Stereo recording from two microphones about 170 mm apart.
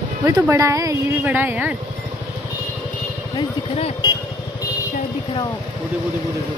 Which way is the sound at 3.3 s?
35° left (ahead or behind).